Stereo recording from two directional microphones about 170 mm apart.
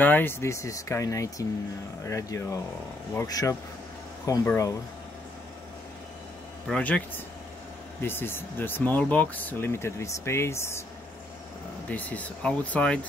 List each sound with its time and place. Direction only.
0.0 s speech: 10° left (ahead or behind)
6.7 s speech: 10° left (ahead or behind)
8.0 s speech: 15° left (ahead or behind)
11.9 s speech: 10° left (ahead or behind)